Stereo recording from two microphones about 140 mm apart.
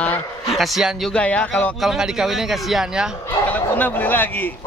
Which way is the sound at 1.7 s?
5° right (ahead or behind).